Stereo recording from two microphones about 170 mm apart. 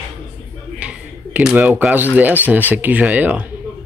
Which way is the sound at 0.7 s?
5° right (ahead or behind).